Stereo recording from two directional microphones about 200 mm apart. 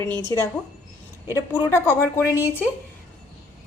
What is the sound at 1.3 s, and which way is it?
Speech, 15° left (ahead or behind).